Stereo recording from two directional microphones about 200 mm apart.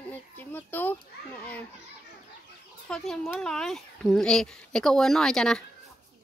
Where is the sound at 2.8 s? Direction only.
Centre (ahead or behind).